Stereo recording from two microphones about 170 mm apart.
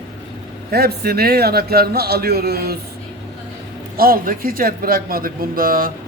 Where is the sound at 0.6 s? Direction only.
65° right (ahead or behind).